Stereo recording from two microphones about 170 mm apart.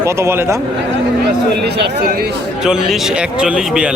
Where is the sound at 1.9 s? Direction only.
65° right (ahead or behind).